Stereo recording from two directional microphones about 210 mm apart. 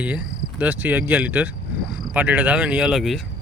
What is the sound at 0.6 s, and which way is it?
Speech, 10° right (ahead or behind).